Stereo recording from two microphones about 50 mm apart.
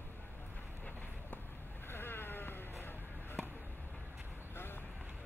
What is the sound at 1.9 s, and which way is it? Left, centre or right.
Vehicle, left.